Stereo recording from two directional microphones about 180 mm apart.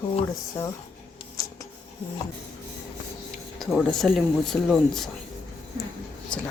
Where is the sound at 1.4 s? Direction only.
20° left (ahead or behind).